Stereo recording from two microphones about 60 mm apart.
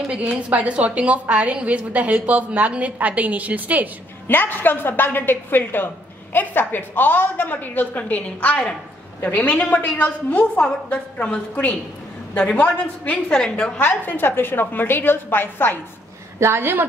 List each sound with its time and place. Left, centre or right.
0.1 s a woman's voice: right
4.3 s a woman's voice: left
13.3 s a woman's voice: centre
13.7 s a woman's voice: left
16.3 s a woman's voice: right